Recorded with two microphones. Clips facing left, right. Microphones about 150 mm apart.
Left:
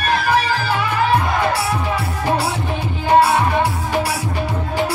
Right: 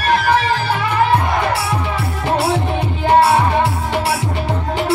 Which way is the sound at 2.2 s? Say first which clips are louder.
Right 4 dB; 25° right (ahead or behind).